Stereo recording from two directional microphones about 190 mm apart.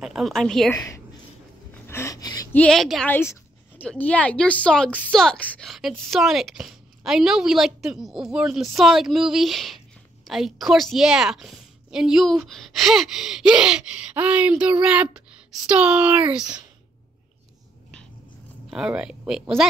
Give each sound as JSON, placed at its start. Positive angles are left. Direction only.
{"t": 0.0, "sound": "a woman's voice", "side_deg": 0}
{"t": 0.7, "sound": "a woman's voice", "side_deg": 15}
{"t": 1.7, "sound": "gasp", "side_deg": 15}
{"t": 2.5, "sound": "a woman's voice", "side_deg": 5}
{"t": 3.1, "sound": "a woman's voice", "side_deg": 10}
{"t": 18.7, "sound": "a woman's voice", "side_deg": -5}